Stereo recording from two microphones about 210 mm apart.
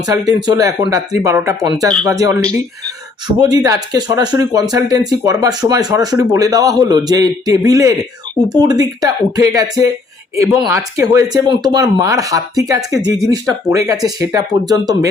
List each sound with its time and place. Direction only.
0.0 s speech: 20° right (ahead or behind)